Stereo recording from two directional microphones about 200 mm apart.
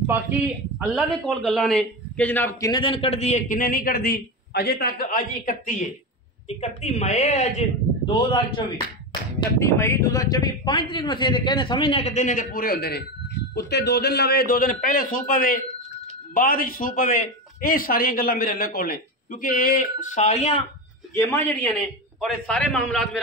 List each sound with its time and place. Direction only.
0.0 s a man's voice: 10° right (ahead or behind)
0.9 s a man's voice: 5° left (ahead or behind); by 7.6 s 35° left (ahead or behind)
8.1 s a man's voice: 25° left (ahead or behind)
9.6 s a man's voice: 15° left (ahead or behind); by 20.6 s 35° left (ahead or behind)
21.1 s a man's voice: 10° left (ahead or behind)